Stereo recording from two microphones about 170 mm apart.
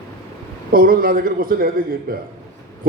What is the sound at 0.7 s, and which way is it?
A man's voice, 55° right (ahead or behind).